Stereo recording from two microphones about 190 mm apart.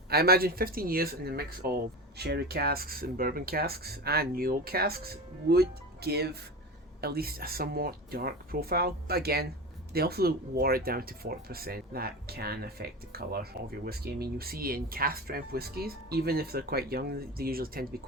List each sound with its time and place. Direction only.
0.1 s speech: 55° right (ahead or behind)